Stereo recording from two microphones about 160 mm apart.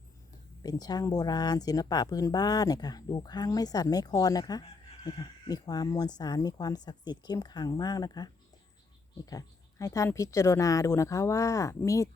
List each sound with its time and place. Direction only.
0.6 s speech: 25° left (ahead or behind)